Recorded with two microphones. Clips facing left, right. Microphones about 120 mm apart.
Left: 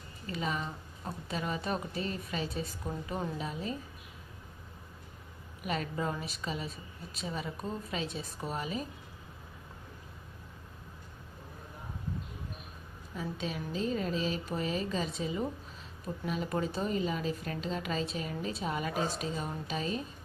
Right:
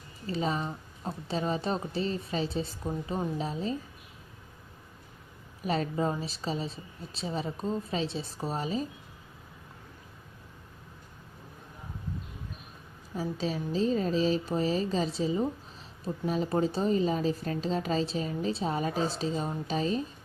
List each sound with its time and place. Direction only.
0.3 s a woman's voice: 30° right (ahead or behind)
3.3 s a woman's voice: 30° right (ahead or behind)
5.6 s a woman's voice: 30° right (ahead or behind)
13.1 s a woman's voice: 35° right (ahead or behind)